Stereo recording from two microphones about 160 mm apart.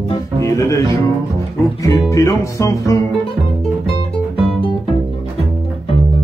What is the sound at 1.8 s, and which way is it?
Music, 20° left (ahead or behind).